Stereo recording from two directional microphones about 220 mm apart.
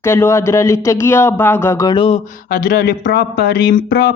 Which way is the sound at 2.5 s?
40° left (ahead or behind).